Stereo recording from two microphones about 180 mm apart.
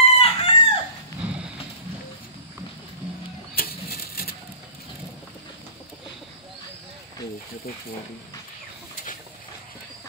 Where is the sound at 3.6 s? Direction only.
55° left (ahead or behind).